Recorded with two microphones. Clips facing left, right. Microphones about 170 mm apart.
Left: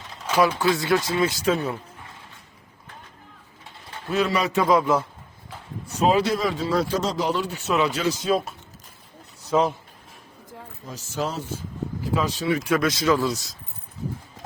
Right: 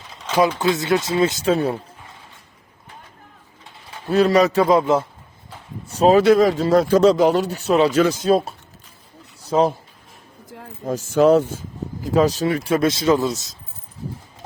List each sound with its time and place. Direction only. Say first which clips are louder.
0.3 s speech: right 2 dB; 20° right (ahead or behind)
4.1 s speech: right 7 dB; 40° right (ahead or behind)
4.6 s speech: right 4 dB; 25° right (ahead or behind)
5.9 s speech: right 6 dB; 40° right (ahead or behind)
6.2 s speech: right 11 dB; 60° right (ahead or behind)
6.5 s speech: right 8 dB; 45° right (ahead or behind)
9.5 s speech: right 4 dB; 35° right (ahead or behind)
10.5 s a sound: right 3 dB; 75° right (ahead or behind)
10.8 s speech: right 14 dB; 55° right (ahead or behind)
12.0 s speech: right 7 dB; 40° right (ahead or behind)
12.7 s speech: right 4 dB; 25° right (ahead or behind)